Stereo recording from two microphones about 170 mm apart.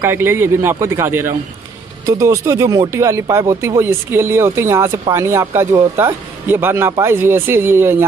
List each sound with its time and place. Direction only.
0.0 s speech: 15° right (ahead or behind)